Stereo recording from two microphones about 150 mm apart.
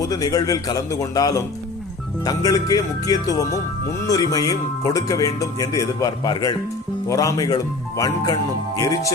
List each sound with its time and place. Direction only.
0.1 s speech: 25° left (ahead or behind)